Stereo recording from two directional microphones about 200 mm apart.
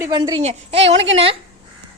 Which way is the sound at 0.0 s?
20° right (ahead or behind).